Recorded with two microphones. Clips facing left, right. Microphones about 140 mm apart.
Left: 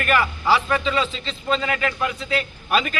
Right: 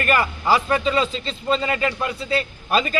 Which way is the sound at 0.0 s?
35° right (ahead or behind).